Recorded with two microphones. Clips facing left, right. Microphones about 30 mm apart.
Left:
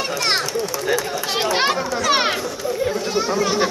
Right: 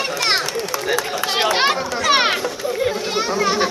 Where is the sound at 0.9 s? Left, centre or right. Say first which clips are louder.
Right 2 dB; right.